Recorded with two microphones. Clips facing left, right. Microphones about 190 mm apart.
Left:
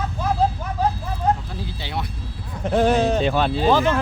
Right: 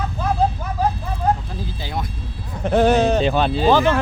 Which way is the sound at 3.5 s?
80° right.